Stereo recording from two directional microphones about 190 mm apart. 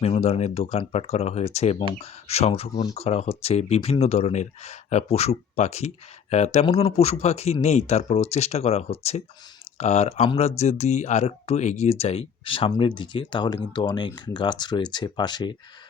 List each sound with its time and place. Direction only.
0.0 s speech: 35° left (ahead or behind)